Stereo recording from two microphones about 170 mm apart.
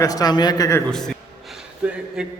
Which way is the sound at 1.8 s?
5° right (ahead or behind).